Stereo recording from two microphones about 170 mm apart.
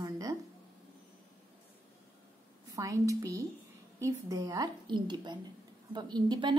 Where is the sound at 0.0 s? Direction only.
20° right (ahead or behind).